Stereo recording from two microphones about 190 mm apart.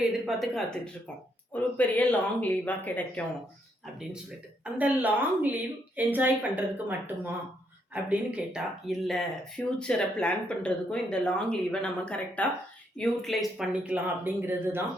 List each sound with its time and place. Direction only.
0.3 s speech: centre (ahead or behind)
4.6 s speech: 10° right (ahead or behind)